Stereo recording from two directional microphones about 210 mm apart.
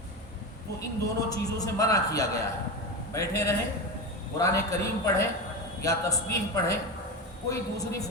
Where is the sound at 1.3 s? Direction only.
15° left (ahead or behind).